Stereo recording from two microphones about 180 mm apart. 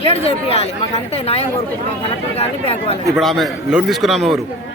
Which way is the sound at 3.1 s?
Centre (ahead or behind).